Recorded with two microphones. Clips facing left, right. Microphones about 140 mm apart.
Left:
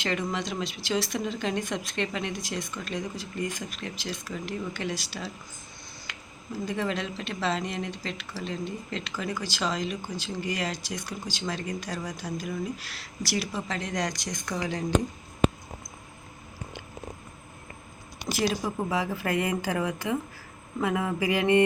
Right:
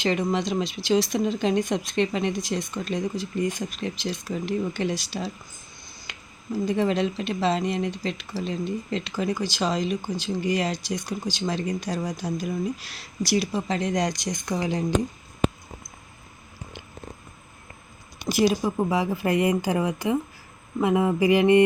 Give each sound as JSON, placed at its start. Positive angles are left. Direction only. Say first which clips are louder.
{"t": 0.0, "sound": "speech", "louder": "right 6 dB", "side_deg": -20}
{"t": 6.1, "sound": "a sound", "louder": "right 1 dB", "side_deg": -20}
{"t": 6.7, "sound": "speech", "louder": "right 7 dB", "side_deg": -20}
{"t": 18.3, "sound": "speech", "louder": "right 6 dB", "side_deg": -15}